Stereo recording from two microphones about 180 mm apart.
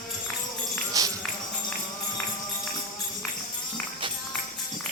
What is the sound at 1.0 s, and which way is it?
Tambourine, 20° right (ahead or behind).